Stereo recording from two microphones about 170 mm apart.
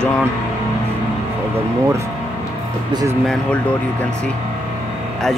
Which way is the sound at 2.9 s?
25° right (ahead or behind).